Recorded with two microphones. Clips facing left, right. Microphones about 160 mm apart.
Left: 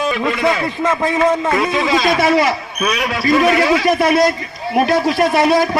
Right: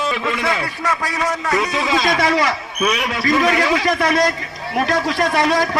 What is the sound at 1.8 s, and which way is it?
Speech, 5° left (ahead or behind).